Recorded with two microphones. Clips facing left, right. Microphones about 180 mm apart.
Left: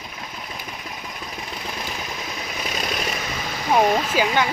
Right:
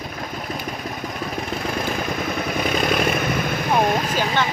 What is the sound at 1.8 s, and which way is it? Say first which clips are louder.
Vehicle: right 8 dB; 55° right (ahead or behind).